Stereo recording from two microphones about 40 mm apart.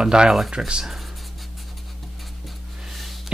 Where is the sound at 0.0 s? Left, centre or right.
Right.